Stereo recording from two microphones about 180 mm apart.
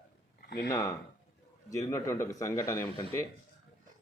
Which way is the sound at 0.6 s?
15° left (ahead or behind).